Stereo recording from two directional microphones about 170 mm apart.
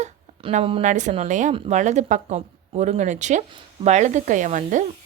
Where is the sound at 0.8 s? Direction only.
45° right (ahead or behind).